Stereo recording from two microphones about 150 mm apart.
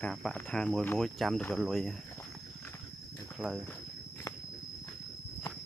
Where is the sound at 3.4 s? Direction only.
Centre (ahead or behind).